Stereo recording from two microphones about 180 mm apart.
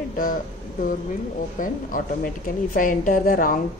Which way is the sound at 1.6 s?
45° left (ahead or behind).